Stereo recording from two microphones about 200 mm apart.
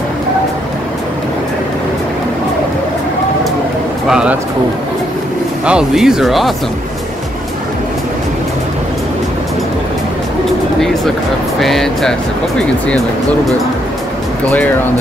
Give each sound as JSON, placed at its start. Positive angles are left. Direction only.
{"t": 4.1, "sound": "a man's voice", "side_deg": -5}
{"t": 5.7, "sound": "speech", "side_deg": -5}
{"t": 11.6, "sound": "speech", "side_deg": 0}